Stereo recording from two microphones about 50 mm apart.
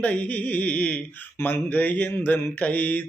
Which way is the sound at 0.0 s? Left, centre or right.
Left.